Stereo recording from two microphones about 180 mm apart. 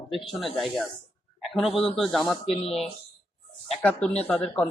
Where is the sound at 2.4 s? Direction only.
35° left (ahead or behind).